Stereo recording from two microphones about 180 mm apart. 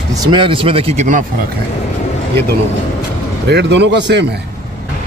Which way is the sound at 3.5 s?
70° right (ahead or behind).